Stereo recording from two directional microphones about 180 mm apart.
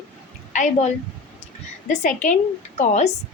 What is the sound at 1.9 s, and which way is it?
Speech, 45° left (ahead or behind).